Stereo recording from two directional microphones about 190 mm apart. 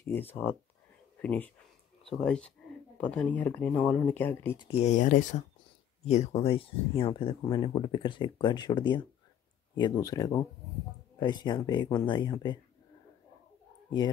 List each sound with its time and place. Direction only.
0.0 s speech: 10° left (ahead or behind)
4.6 s speech: 35° left (ahead or behind)